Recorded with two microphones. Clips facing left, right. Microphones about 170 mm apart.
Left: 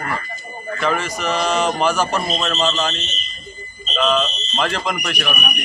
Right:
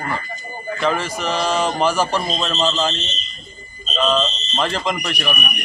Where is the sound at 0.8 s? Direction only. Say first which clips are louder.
Even; centre (ahead or behind).